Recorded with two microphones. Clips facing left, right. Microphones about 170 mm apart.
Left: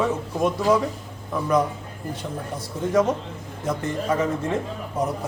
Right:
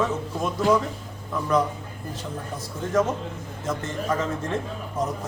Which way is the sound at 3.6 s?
10° left (ahead or behind).